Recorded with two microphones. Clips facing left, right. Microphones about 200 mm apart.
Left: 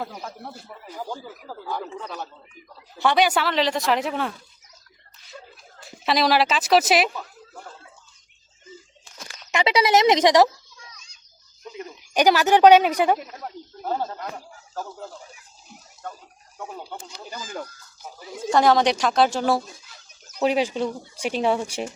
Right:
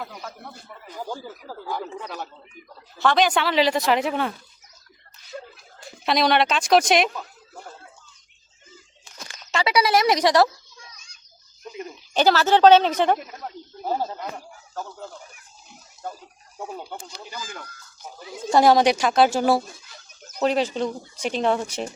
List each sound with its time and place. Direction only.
0.0 s speech: 30° left (ahead or behind)
0.5 s speech: 5° left (ahead or behind)
1.5 s speech: 10° right (ahead or behind)
3.0 s speech: 10° left (ahead or behind)
5.8 s speech: centre (ahead or behind)
9.5 s speech: 20° left (ahead or behind)
12.1 s speech: 15° left (ahead or behind)
13.8 s speech: 10° right (ahead or behind)
14.3 s speech: 5° left (ahead or behind)
17.2 s speech: 35° left (ahead or behind)
18.0 s speech: 5° left (ahead or behind)
18.5 s speech: 10° right (ahead or behind)
20.4 s speech: 10° left (ahead or behind)